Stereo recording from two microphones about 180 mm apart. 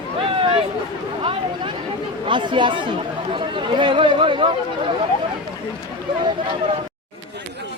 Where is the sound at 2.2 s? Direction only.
25° right (ahead or behind).